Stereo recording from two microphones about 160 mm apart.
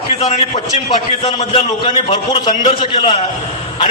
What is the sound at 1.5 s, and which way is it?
Speech, 35° left (ahead or behind).